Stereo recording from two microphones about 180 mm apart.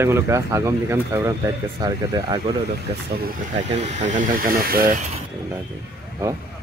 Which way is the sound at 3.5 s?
40° right (ahead or behind).